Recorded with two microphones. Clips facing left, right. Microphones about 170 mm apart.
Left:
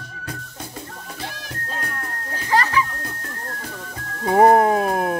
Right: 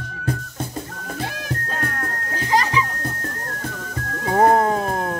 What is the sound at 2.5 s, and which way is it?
Children playing, 15° right (ahead or behind).